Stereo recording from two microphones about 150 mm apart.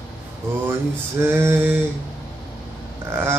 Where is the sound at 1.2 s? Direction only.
15° right (ahead or behind).